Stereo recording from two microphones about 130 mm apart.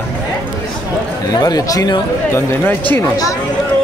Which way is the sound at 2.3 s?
15° left (ahead or behind).